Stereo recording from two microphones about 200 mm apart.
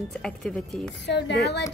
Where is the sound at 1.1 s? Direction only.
60° left (ahead or behind).